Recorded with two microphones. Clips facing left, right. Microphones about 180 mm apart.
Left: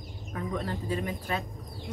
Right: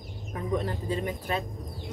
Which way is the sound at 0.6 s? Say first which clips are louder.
Right 1 dB; 25° right (ahead or behind).